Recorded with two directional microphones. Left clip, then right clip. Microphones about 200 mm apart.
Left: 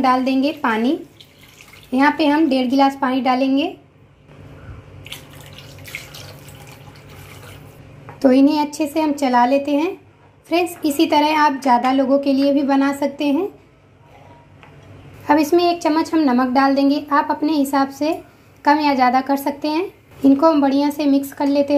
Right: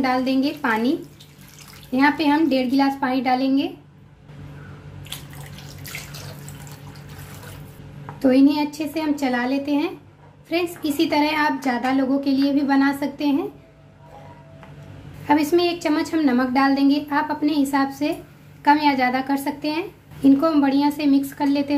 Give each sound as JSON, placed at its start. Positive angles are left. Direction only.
{"t": 0.0, "sound": "speech", "side_deg": 15}
{"t": 8.2, "sound": "speech", "side_deg": 15}
{"t": 15.2, "sound": "speech", "side_deg": 15}